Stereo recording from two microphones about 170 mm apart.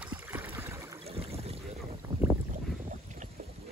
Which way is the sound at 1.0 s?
35° right (ahead or behind).